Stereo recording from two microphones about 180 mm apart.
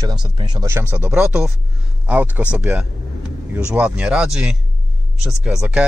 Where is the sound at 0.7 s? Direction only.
10° right (ahead or behind).